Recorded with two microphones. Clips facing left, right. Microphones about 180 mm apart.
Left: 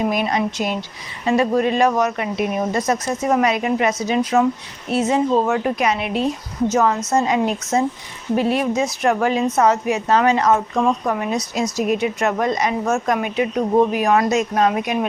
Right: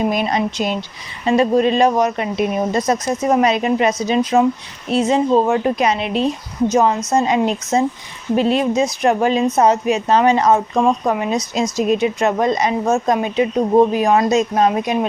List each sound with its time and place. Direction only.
0.0 s a woman's voice: 25° right (ahead or behind)